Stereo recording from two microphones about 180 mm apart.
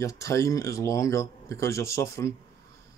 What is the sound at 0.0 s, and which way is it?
Speech, 20° left (ahead or behind).